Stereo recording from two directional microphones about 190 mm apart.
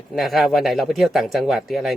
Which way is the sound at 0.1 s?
Centre (ahead or behind).